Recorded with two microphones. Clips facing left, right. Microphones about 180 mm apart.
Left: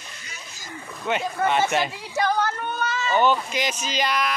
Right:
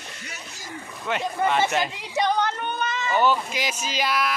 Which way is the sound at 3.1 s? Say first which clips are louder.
Left 1 dB; 5° right (ahead or behind).